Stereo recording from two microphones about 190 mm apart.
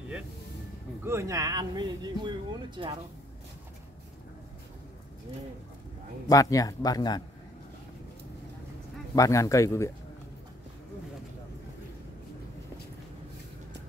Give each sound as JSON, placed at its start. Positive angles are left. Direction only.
{"t": 1.0, "sound": "speech", "side_deg": -15}
{"t": 6.2, "sound": "a man's voice", "side_deg": 20}
{"t": 9.1, "sound": "speech", "side_deg": 15}